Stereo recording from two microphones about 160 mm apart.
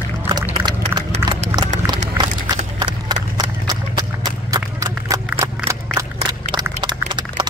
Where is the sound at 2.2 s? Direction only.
25° right (ahead or behind).